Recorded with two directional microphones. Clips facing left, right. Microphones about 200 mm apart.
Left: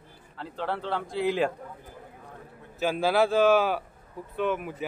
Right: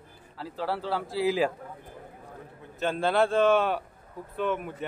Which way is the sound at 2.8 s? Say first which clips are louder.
Left 1 dB; 5° left (ahead or behind).